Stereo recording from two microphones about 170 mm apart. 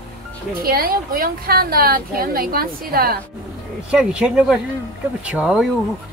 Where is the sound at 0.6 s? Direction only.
60° right (ahead or behind).